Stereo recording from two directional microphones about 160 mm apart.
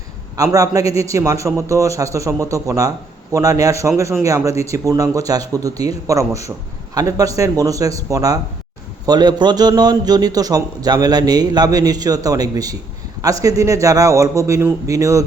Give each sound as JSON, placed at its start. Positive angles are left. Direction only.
{"t": 0.3, "sound": "a man's voice", "side_deg": -20}